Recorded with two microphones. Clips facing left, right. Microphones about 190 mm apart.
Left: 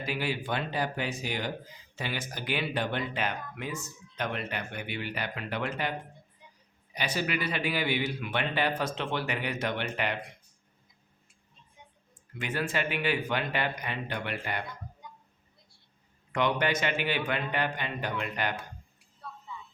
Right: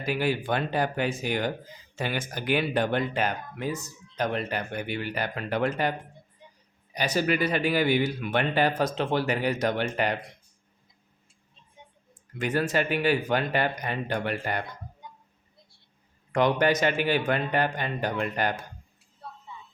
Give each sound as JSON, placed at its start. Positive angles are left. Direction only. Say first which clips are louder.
{"t": 0.0, "sound": "speech", "louder": "right 5 dB", "side_deg": -45}
{"t": 6.9, "sound": "speech", "louder": "right 6 dB", "side_deg": -40}
{"t": 12.4, "sound": "a man's voice", "louder": "right 6 dB", "side_deg": -40}
{"t": 16.3, "sound": "speech", "louder": "right 5 dB", "side_deg": -40}